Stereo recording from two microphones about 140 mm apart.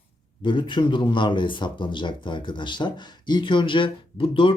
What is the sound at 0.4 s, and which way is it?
Speech, 35° left (ahead or behind).